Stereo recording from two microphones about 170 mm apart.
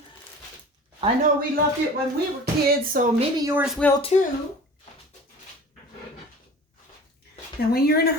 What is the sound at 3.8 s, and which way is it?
Speech, 10° left (ahead or behind).